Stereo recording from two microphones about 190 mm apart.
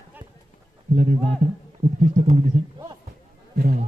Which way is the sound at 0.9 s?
40° right (ahead or behind).